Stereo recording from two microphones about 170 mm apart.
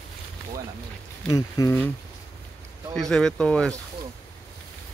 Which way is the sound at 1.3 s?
20° left (ahead or behind).